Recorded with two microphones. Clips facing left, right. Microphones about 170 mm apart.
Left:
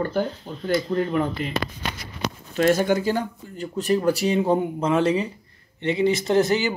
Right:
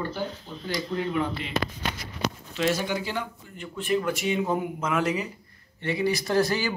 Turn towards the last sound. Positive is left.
turn(degrees=20)  # may be behind; listen again after turning